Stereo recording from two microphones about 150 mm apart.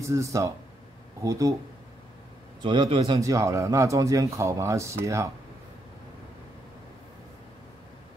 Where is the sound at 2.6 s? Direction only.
30° right (ahead or behind).